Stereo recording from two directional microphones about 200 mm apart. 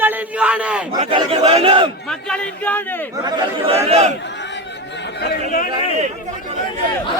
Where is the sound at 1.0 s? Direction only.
30° right (ahead or behind).